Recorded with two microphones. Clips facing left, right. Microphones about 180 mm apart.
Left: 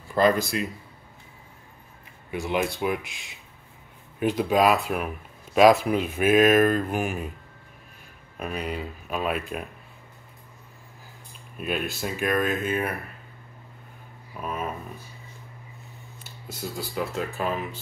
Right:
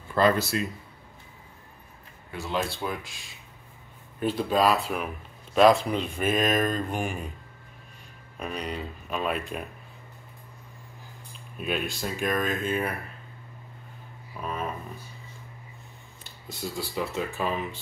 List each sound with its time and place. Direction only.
0.1 s speech: 15° left (ahead or behind)
2.3 s speech: 20° left (ahead or behind)
4.2 s speech: 10° left (ahead or behind)
8.4 s speech: 5° left (ahead or behind)
11.5 s speech: centre (ahead or behind)
14.4 s a sound: 5° left (ahead or behind)
16.3 s speech: centre (ahead or behind)